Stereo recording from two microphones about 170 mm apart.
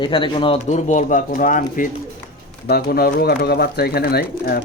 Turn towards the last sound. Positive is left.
turn(degrees=65)  # may be behind; listen again after turning